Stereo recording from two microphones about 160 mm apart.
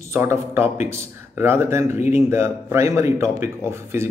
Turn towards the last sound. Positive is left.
turn(degrees=-15)  # may be behind; listen again after turning